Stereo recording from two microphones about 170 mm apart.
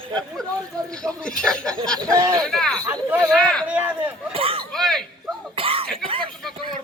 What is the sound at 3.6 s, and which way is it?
Run, 10° right (ahead or behind).